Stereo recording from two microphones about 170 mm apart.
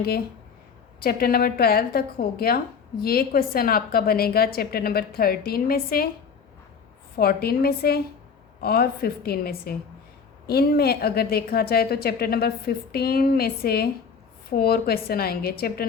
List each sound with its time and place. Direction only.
0.9 s a woman's voice: 60° left (ahead or behind)
7.2 s a woman's voice: 65° left (ahead or behind)